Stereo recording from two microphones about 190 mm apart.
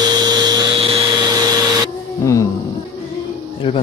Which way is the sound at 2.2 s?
15° left (ahead or behind).